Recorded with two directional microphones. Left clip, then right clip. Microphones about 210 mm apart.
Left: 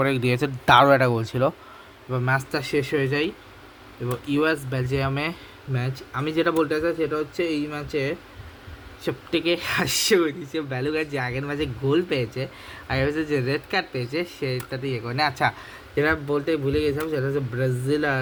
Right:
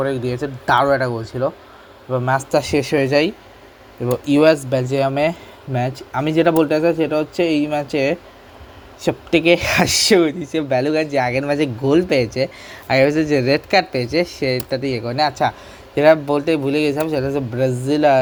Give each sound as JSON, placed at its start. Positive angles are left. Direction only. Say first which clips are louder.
{"t": 0.1, "sound": "speech", "louder": "right 1 dB", "side_deg": 25}
{"t": 0.6, "sound": "speech", "louder": "even", "side_deg": 45}
{"t": 1.1, "sound": "speech", "louder": "right 2 dB", "side_deg": 25}
{"t": 2.2, "sound": "speech", "louder": "right 6 dB", "side_deg": -5}
{"t": 2.6, "sound": "speech", "louder": "right 7 dB", "side_deg": -20}
{"t": 15.1, "sound": "speech", "louder": "right 4 dB", "side_deg": -5}
{"t": 16.0, "sound": "speech", "louder": "right 9 dB", "side_deg": -25}